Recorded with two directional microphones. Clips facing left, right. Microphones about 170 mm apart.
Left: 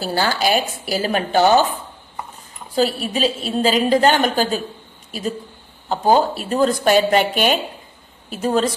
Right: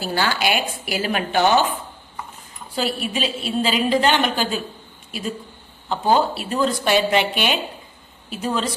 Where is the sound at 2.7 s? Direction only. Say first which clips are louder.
Left 5 dB; 40° left (ahead or behind).